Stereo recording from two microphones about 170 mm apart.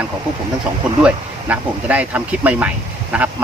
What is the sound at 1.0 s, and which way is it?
Speech, 10° right (ahead or behind).